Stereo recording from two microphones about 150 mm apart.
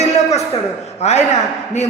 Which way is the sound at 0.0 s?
45° left (ahead or behind).